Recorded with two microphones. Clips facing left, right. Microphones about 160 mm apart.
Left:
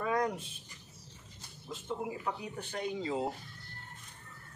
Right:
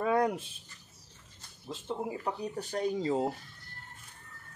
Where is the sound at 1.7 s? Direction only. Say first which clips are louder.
Right 2 dB; 30° right (ahead or behind).